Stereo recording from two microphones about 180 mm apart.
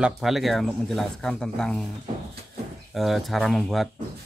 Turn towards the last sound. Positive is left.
turn(degrees=0)  # may be behind; listen again after turning